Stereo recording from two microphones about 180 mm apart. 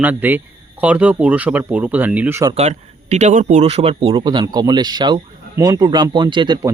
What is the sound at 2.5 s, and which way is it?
Speech, 35° right (ahead or behind).